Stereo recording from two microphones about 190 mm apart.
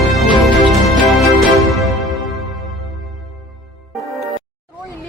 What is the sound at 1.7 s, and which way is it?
Music, centre (ahead or behind).